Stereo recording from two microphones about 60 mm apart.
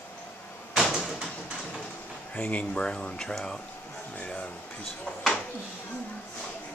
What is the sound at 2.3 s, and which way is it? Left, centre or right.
Speech, left.